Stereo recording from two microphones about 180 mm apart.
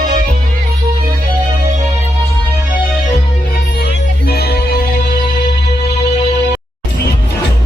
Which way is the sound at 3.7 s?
60° left (ahead or behind).